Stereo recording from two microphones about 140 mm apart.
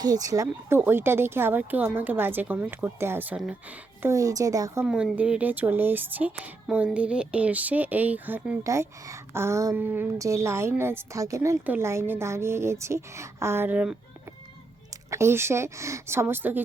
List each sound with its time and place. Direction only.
0.0 s a woman's voice: 25° right (ahead or behind)
4.1 s a woman's voice: 25° right (ahead or behind)
4.9 s speech: 5° right (ahead or behind)
8.6 s a woman's voice: 20° right (ahead or behind)
15.1 s speech: 20° right (ahead or behind)